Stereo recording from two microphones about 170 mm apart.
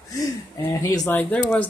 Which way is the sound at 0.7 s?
20° left (ahead or behind).